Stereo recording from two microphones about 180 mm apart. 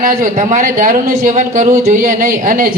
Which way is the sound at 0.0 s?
50° right (ahead or behind).